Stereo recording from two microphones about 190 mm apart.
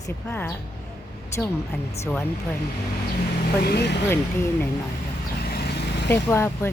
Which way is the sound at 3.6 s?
60° left (ahead or behind).